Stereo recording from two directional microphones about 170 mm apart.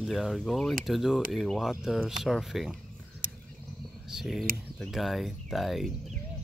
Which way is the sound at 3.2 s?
55° right (ahead or behind).